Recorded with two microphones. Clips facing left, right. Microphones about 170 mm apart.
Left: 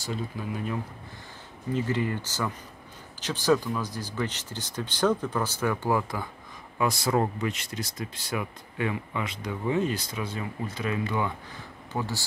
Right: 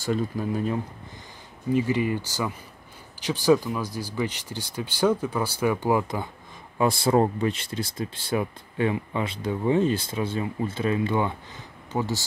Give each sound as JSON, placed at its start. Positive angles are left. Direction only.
{"t": 0.0, "sound": "speech", "side_deg": -50}
{"t": 1.7, "sound": "speech", "side_deg": -10}